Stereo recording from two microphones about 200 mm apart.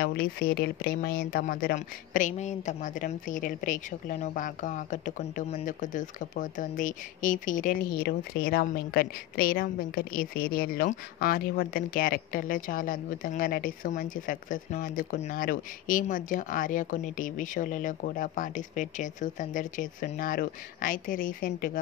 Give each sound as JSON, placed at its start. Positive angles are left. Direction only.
{"t": 0.0, "sound": "speech", "side_deg": 50}